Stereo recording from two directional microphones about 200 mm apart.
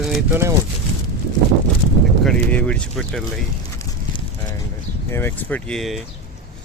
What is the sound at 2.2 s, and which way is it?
Speech, 5° left (ahead or behind).